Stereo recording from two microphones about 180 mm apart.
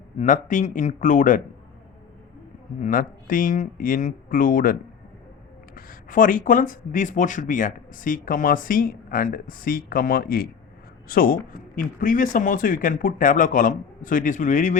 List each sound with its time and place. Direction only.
0.2 s speech: 45° left (ahead or behind)
2.8 s speech: 50° left (ahead or behind)